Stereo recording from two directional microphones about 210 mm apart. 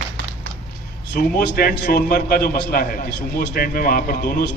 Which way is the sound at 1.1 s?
45° left (ahead or behind).